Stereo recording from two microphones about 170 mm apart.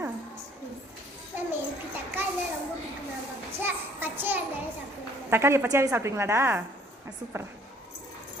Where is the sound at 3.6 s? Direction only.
10° right (ahead or behind).